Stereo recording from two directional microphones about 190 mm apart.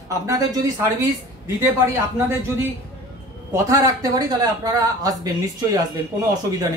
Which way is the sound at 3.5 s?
15° right (ahead or behind).